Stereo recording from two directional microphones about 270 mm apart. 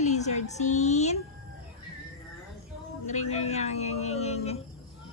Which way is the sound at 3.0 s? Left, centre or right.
Left.